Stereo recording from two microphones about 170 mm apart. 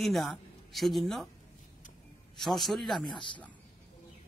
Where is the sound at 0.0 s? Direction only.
Centre (ahead or behind).